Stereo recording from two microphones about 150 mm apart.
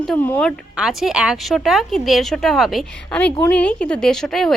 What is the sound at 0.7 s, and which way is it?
A woman's voice, 5° right (ahead or behind).